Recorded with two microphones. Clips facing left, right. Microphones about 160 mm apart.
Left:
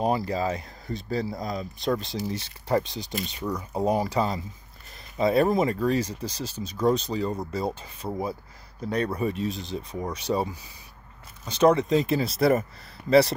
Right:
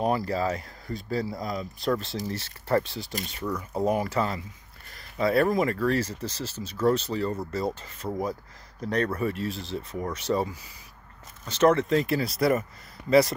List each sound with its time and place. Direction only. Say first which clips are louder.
0.1 s speech: even; 20° left (ahead or behind)